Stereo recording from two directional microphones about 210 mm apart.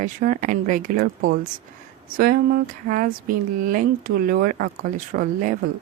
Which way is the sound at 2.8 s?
40° right (ahead or behind).